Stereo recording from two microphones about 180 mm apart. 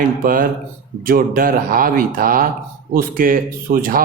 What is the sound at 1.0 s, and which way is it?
Speech, 55° right (ahead or behind).